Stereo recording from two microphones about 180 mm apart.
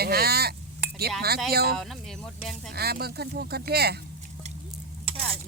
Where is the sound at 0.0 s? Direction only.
60° right (ahead or behind).